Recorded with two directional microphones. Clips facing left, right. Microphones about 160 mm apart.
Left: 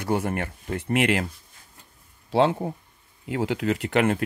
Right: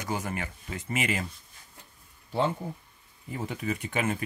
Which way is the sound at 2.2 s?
85° left.